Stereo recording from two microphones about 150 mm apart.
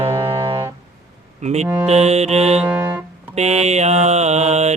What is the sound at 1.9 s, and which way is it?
Music, 45° right (ahead or behind).